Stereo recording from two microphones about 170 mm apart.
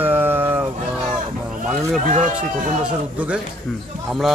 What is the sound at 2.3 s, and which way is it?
A man's voice, 5° right (ahead or behind).